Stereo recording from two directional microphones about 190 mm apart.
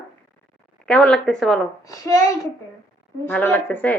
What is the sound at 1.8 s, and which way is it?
Speech, 15° left (ahead or behind).